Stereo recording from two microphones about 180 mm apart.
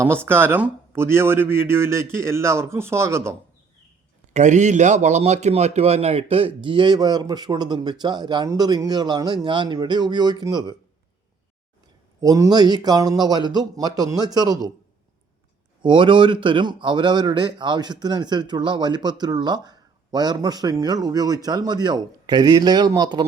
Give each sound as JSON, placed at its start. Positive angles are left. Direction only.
{"t": 0.0, "sound": "speech", "side_deg": -15}
{"t": 4.4, "sound": "speech", "side_deg": -40}
{"t": 12.2, "sound": "speech", "side_deg": -20}
{"t": 15.8, "sound": "speech", "side_deg": -25}